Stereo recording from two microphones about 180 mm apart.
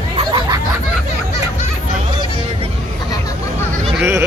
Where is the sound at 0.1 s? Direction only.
25° right (ahead or behind).